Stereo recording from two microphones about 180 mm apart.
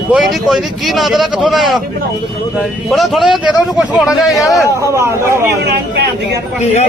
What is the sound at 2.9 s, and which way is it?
Speech, centre (ahead or behind).